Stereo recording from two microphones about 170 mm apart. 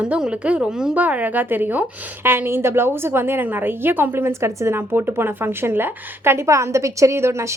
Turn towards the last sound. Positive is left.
turn(degrees=-15)  # may be behind; listen again after turning